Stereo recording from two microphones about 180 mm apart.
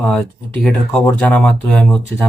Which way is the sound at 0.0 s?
5° left (ahead or behind).